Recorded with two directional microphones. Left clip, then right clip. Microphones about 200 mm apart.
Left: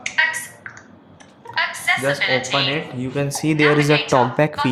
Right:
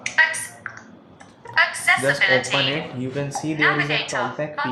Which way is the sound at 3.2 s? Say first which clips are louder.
Left 3 dB; 30° left (ahead or behind).